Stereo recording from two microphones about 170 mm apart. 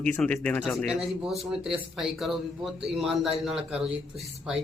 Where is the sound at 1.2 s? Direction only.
5° right (ahead or behind).